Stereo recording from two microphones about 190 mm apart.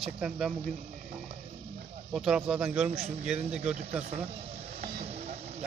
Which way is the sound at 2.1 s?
5° right (ahead or behind).